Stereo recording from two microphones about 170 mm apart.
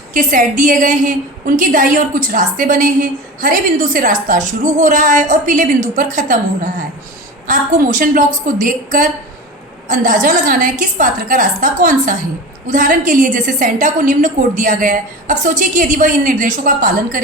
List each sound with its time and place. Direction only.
0.1 s a woman's voice: 50° right (ahead or behind)